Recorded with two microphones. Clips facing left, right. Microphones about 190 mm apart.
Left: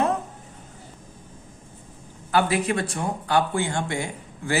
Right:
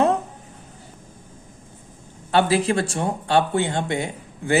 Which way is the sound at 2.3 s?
30° right (ahead or behind).